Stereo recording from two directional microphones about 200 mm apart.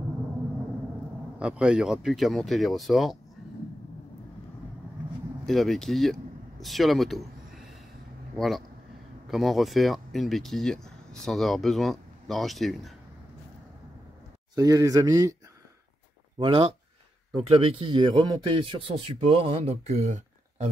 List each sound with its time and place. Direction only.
1.4 s speech: 5° right (ahead or behind)
5.5 s speech: centre (ahead or behind)
14.5 s a man's voice: 15° right (ahead or behind)
16.3 s a man's voice: 25° right (ahead or behind)